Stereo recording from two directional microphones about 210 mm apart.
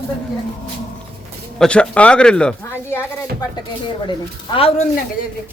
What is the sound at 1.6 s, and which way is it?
Speech, 5° left (ahead or behind).